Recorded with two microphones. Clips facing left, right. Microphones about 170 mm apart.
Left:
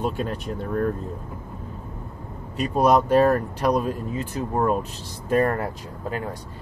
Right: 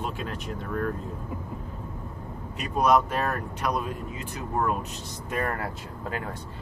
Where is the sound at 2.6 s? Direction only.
35° left (ahead or behind).